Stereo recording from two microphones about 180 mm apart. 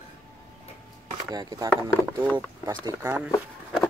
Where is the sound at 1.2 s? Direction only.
20° right (ahead or behind).